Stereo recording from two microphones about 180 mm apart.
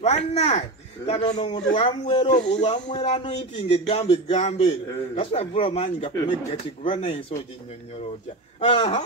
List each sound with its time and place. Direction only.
0.0 s speech: 35° left (ahead or behind)
8.5 s speech: 30° left (ahead or behind)